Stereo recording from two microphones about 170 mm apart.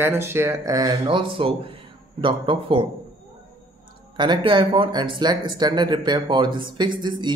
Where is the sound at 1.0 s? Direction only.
30° right (ahead or behind).